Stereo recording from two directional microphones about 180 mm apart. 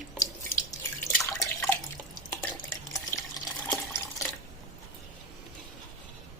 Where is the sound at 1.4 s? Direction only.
15° left (ahead or behind).